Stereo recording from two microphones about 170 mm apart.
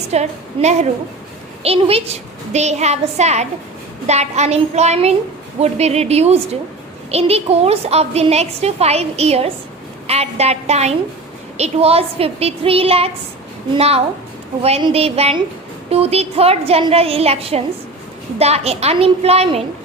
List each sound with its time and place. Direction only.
0.1 s a woman's voice: 40° right (ahead or behind)